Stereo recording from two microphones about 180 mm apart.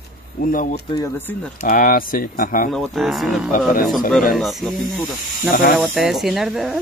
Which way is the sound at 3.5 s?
50° left (ahead or behind).